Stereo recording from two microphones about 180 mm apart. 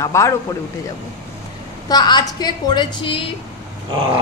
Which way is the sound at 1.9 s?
25° left (ahead or behind).